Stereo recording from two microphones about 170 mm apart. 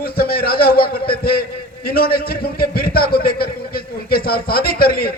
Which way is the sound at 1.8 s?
65° left (ahead or behind).